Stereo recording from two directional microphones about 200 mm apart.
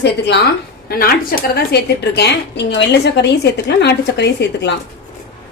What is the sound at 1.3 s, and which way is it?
A woman's voice, 45° left (ahead or behind).